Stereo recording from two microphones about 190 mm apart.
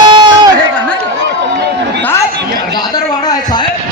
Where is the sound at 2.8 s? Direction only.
20° left (ahead or behind).